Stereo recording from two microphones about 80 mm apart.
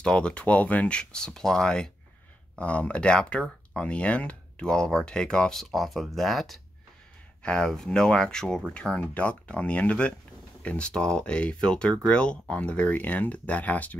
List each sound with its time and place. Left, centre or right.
0.0 s speech: centre